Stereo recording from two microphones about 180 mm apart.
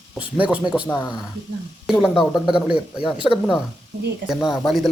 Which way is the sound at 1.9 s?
Centre (ahead or behind).